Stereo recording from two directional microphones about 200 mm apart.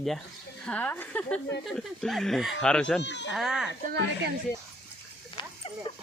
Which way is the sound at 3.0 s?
60° left (ahead or behind).